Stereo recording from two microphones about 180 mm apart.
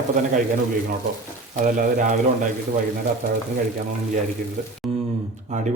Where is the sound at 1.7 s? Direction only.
50° right (ahead or behind).